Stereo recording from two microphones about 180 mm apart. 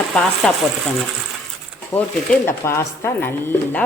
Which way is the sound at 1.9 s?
10° left (ahead or behind).